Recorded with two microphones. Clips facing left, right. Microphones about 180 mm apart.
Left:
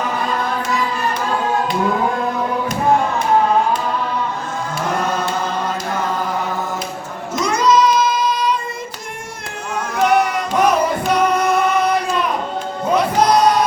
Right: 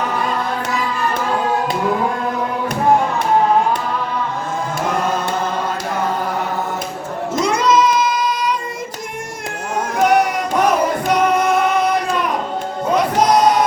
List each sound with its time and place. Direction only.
7.4 s child singing: 30° right (ahead or behind)
10.0 s music: 10° right (ahead or behind)